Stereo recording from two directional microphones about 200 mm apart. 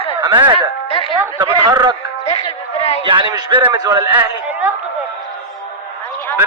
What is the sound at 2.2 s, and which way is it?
Speech, 30° left (ahead or behind).